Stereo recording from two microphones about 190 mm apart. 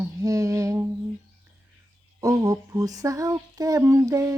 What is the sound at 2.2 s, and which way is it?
A woman's voice, 20° right (ahead or behind).